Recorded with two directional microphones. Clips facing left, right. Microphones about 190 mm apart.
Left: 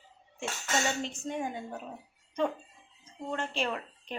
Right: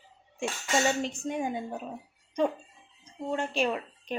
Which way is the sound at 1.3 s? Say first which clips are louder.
Right 3 dB; 15° right (ahead or behind).